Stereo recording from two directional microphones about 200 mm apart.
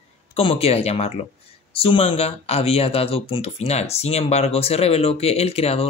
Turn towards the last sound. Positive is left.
turn(degrees=30)  # may be behind; listen again after turning